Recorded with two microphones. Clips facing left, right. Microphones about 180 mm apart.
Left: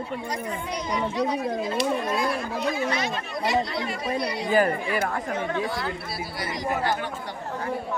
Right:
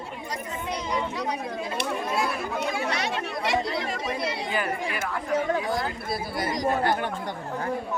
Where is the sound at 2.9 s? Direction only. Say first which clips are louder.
Even; 75° right (ahead or behind).